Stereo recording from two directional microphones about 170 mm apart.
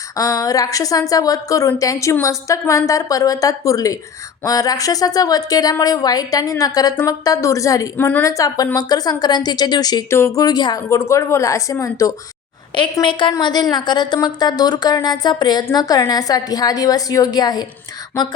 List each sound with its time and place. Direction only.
0.2 s a woman's voice: 20° left (ahead or behind)
12.7 s a woman's voice: 30° left (ahead or behind)